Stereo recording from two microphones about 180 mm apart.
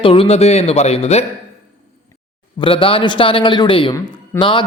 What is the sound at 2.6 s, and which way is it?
Speech, 30° left (ahead or behind).